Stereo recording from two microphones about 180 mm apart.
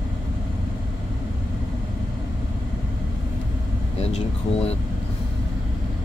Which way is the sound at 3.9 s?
35° left (ahead or behind).